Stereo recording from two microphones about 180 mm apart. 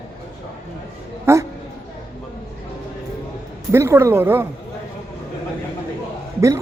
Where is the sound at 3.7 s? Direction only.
15° right (ahead or behind).